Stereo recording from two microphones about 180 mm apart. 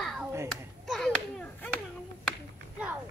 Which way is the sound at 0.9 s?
Centre (ahead or behind).